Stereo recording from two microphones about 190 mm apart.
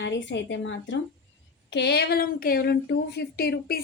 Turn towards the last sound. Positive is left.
turn(degrees=55)  # may be behind; listen again after turning